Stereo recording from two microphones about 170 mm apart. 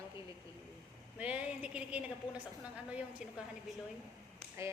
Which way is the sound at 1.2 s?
5° right (ahead or behind).